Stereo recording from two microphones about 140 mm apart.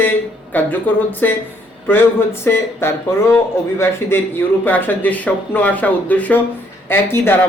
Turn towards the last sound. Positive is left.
turn(degrees=15)  # may be behind; listen again after turning